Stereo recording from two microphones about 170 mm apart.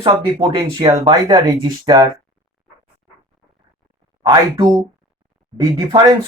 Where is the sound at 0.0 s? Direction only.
25° right (ahead or behind).